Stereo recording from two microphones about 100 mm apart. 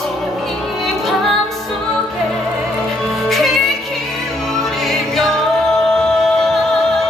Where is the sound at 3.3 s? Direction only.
Centre (ahead or behind).